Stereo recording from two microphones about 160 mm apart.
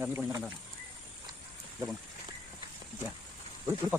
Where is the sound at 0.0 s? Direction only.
15° right (ahead or behind).